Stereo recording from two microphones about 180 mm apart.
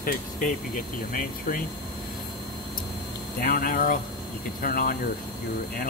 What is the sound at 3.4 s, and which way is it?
Speech, 50° left (ahead or behind).